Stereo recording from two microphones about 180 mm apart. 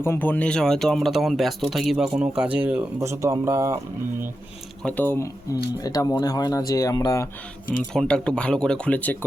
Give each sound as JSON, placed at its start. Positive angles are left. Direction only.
{"t": 0.0, "sound": "speech", "side_deg": 10}
{"t": 4.8, "sound": "speech", "side_deg": 10}
{"t": 7.9, "sound": "speech", "side_deg": 5}